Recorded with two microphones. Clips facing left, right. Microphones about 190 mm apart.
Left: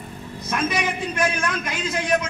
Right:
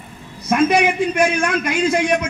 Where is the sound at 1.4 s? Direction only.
80° right.